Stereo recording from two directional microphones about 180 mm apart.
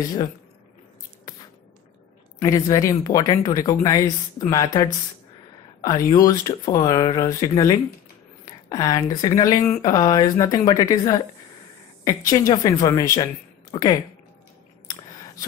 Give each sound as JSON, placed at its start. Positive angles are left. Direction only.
{"t": 0.0, "sound": "speech", "side_deg": 20}
{"t": 2.4, "sound": "speech", "side_deg": 20}
{"t": 12.3, "sound": "speech", "side_deg": 20}